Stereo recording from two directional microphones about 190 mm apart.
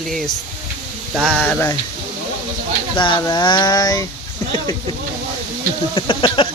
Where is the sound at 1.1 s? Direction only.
Centre (ahead or behind).